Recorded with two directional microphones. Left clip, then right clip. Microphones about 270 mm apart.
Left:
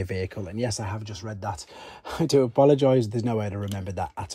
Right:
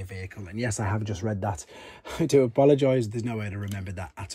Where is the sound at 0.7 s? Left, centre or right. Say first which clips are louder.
Right 2 dB; centre.